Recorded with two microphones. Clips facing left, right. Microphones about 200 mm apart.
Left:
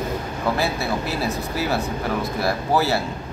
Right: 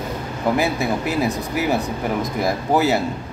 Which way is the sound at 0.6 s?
15° right (ahead or behind).